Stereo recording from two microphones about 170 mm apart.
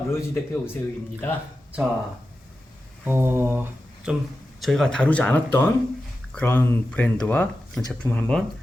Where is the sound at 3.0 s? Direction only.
15° right (ahead or behind).